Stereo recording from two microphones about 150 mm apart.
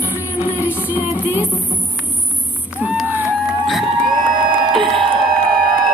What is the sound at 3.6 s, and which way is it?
Crowd, centre (ahead or behind).